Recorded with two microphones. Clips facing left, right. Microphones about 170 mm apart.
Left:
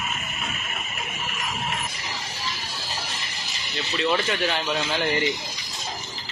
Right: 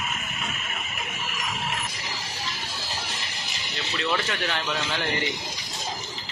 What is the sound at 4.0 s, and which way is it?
Speech, 20° left (ahead or behind).